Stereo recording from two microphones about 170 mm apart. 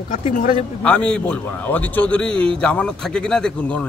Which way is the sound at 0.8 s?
5° left (ahead or behind).